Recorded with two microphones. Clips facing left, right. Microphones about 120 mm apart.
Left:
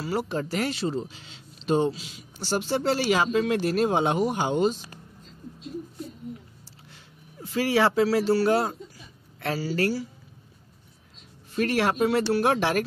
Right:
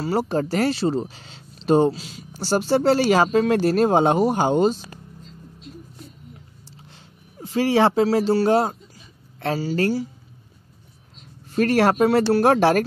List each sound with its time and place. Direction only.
0.0 s speech: 35° right (ahead or behind)
7.3 s speech: 25° right (ahead or behind)
11.5 s speech: 45° right (ahead or behind)